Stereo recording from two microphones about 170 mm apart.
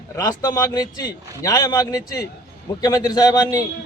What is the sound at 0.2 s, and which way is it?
A man's voice, 20° left (ahead or behind).